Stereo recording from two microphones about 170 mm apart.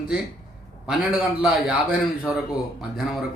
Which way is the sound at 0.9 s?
5° right (ahead or behind).